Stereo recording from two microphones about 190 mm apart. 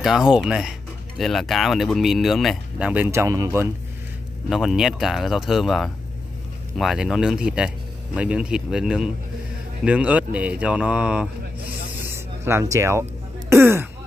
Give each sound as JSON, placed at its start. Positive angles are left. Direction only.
{"t": 0.0, "sound": "speech", "side_deg": 0}
{"t": 4.5, "sound": "speech", "side_deg": 0}
{"t": 12.1, "sound": "a sound", "side_deg": -15}
{"t": 13.5, "sound": "speech", "side_deg": -15}